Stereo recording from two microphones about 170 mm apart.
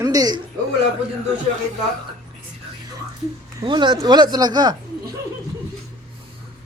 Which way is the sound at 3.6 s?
25° right (ahead or behind).